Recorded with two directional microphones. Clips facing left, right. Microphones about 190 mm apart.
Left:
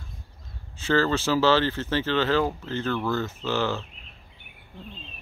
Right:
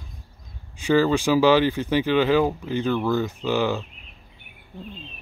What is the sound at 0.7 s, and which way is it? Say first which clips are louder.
Speech: right 4 dB; 15° right (ahead or behind).